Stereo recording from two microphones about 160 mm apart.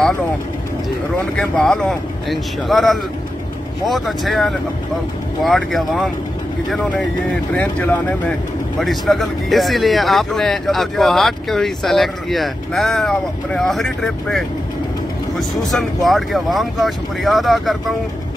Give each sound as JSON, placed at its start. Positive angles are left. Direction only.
{"t": 1.3, "sound": "speech", "side_deg": 5}